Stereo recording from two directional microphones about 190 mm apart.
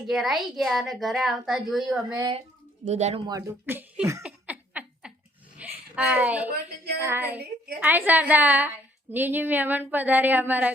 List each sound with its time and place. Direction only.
0.1 s a woman's voice: centre (ahead or behind)
2.1 s speech: 20° right (ahead or behind)
2.9 s speech: 35° right (ahead or behind)
3.2 s a woman's voice: 15° right (ahead or behind)
4.2 s a sound: 5° right (ahead or behind)
7.0 s a woman's voice: 10° right (ahead or behind)